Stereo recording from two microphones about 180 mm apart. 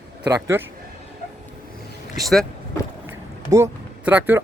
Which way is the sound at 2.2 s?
Centre (ahead or behind).